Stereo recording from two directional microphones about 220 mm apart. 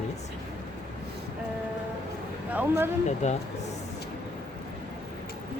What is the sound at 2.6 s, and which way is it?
Speech, 10° right (ahead or behind).